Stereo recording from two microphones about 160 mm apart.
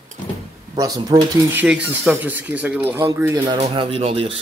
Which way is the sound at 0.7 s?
25° right (ahead or behind).